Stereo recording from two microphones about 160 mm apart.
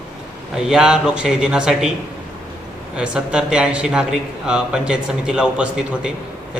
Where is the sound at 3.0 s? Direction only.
5° right (ahead or behind).